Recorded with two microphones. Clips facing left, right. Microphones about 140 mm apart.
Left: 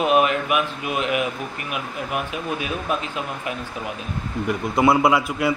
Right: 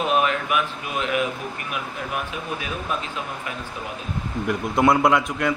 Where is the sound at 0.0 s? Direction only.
15° left (ahead or behind).